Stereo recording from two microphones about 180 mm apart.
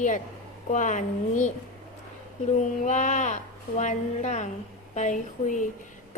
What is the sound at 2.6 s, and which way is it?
A woman's voice, 45° left (ahead or behind).